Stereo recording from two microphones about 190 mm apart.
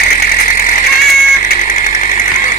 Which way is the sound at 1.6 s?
45° left (ahead or behind).